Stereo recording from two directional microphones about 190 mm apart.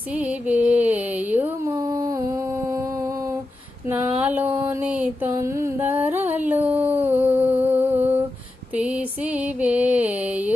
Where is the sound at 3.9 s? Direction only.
10° right (ahead or behind).